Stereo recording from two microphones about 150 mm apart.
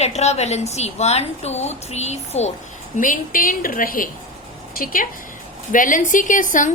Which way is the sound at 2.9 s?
60° left (ahead or behind).